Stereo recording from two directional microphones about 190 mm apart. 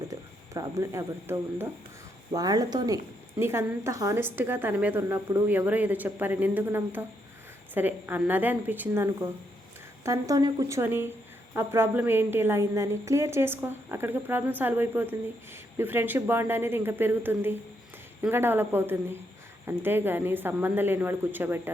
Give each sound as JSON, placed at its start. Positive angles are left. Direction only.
{"t": 0.1, "sound": "a woman's voice", "side_deg": -20}